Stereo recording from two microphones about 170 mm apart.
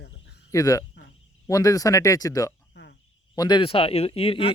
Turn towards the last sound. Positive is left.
turn(degrees=35)  # may be behind; listen again after turning